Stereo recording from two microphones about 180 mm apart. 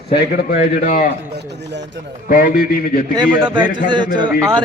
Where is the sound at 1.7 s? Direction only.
75° right (ahead or behind).